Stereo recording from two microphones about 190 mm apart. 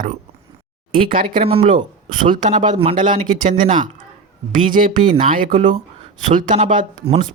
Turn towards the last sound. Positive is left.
turn(degrees=-30)  # may be behind; listen again after turning